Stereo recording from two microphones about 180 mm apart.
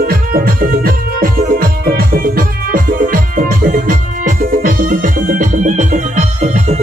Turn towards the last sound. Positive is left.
turn(degrees=-40)  # may be behind; listen again after turning